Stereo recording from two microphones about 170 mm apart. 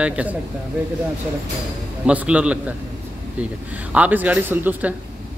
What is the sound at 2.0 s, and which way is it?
Speech, 5° right (ahead or behind).